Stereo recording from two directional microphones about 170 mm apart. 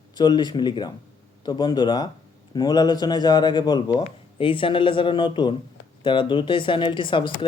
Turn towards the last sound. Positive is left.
turn(degrees=30)  # may be behind; listen again after turning